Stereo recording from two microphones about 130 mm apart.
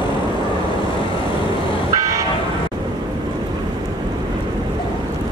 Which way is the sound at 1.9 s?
25° right (ahead or behind).